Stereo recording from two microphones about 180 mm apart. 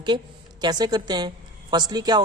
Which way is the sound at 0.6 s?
25° right (ahead or behind).